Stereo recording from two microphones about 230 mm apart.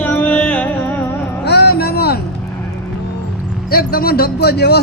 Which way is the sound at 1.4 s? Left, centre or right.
Left.